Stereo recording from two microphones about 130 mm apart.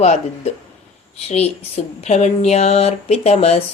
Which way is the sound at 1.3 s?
55° left (ahead or behind).